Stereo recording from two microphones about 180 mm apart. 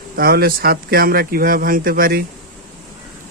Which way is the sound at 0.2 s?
60° right (ahead or behind).